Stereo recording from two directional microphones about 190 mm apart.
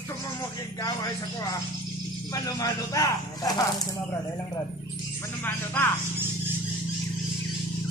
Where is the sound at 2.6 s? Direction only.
20° left (ahead or behind).